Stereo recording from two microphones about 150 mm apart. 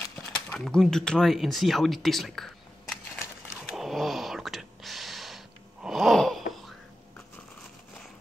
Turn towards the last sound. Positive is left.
turn(degrees=0)  # may be behind; listen again after turning